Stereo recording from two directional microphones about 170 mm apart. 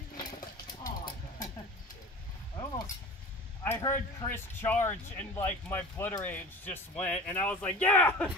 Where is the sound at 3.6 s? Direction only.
15° left (ahead or behind).